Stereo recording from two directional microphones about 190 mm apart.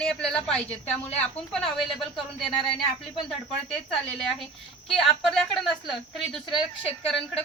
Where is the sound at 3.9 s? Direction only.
Centre (ahead or behind).